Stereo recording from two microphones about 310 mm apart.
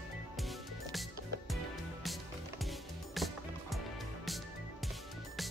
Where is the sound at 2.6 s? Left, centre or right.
Centre.